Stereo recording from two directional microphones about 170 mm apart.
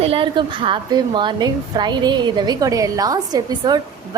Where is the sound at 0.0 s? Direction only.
30° right (ahead or behind).